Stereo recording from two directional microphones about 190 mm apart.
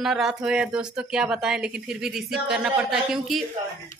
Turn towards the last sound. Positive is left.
turn(degrees=0)  # may be behind; listen again after turning